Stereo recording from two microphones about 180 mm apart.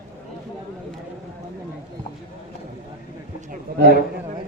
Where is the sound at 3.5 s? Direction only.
55° right (ahead or behind).